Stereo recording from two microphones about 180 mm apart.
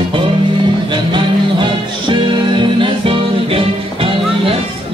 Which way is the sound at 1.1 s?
25° right (ahead or behind).